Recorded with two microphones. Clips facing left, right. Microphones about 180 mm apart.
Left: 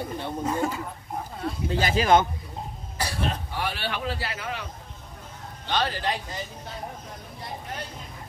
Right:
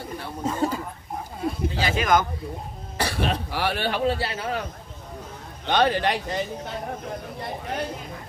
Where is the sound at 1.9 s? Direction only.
30° left (ahead or behind).